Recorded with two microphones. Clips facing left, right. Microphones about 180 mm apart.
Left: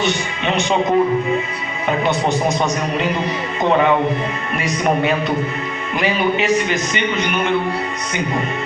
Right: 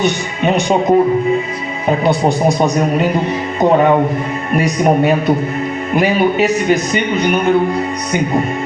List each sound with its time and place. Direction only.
0.0 s speech: 45° right (ahead or behind)